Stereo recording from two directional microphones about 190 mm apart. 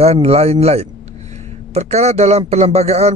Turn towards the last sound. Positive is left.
turn(degrees=-35)  # may be behind; listen again after turning